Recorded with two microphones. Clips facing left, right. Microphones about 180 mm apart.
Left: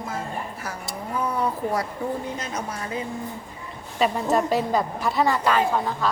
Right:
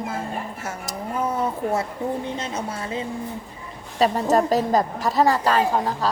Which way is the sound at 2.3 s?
30° right (ahead or behind).